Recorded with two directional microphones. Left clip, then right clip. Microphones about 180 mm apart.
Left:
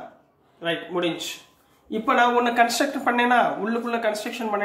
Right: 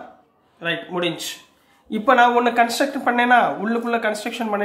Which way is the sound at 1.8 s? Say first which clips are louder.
Right 5 dB; 40° right (ahead or behind).